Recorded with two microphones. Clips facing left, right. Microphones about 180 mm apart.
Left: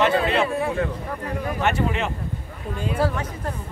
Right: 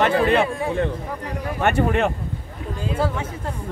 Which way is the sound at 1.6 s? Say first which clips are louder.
Right 5 dB; 55° right (ahead or behind).